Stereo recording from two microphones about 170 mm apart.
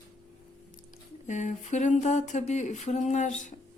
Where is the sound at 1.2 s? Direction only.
45° left (ahead or behind).